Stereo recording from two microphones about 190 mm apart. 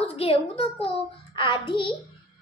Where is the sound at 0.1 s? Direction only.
30° left (ahead or behind).